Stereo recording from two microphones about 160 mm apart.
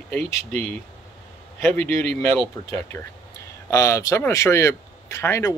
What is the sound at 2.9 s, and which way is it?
Speech, 15° left (ahead or behind).